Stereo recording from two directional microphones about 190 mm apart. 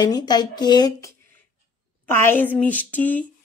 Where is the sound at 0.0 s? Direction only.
20° left (ahead or behind).